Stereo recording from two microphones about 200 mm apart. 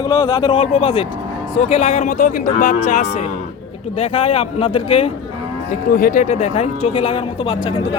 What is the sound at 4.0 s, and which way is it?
Speech, 30° left (ahead or behind).